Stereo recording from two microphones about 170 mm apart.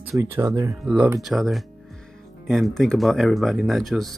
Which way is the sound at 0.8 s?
5° right (ahead or behind).